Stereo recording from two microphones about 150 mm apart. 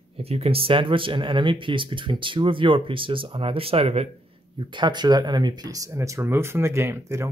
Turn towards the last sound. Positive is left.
turn(degrees=-20)  # may be behind; listen again after turning